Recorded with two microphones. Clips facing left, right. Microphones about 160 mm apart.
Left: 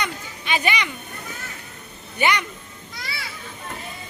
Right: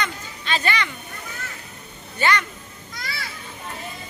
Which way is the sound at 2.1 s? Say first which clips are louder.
Even; 15° left (ahead or behind).